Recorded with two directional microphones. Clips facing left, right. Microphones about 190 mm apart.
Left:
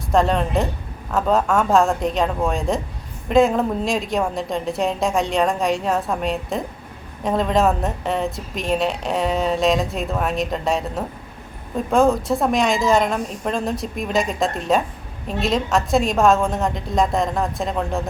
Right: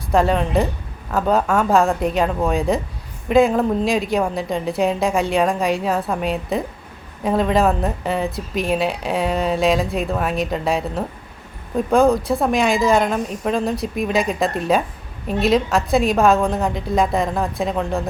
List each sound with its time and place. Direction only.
0.1 s a woman's voice: 5° right (ahead or behind)